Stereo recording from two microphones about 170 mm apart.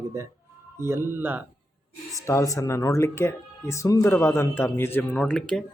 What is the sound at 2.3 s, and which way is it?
Speech, 15° left (ahead or behind).